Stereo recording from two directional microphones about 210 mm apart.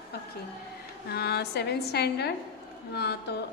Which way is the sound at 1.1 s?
50° left (ahead or behind).